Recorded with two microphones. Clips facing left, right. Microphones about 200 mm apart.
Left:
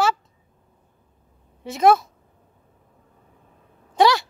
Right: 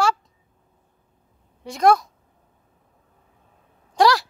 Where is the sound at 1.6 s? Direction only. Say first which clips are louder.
Left 1 dB; 5° left (ahead or behind).